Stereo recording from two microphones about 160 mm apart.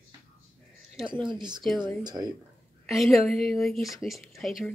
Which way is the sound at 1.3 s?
25° right (ahead or behind).